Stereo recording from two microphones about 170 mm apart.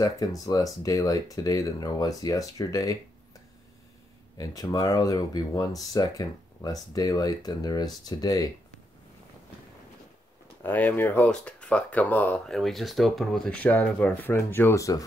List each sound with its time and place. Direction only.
0.5 s speech: 20° left (ahead or behind)
4.4 s speech: 20° left (ahead or behind)
10.6 s speech: 10° left (ahead or behind)